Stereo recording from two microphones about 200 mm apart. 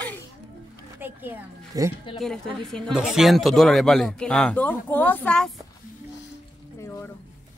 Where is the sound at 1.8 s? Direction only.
15° right (ahead or behind).